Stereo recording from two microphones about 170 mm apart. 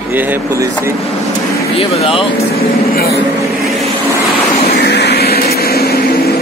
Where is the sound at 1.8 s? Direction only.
30° left (ahead or behind).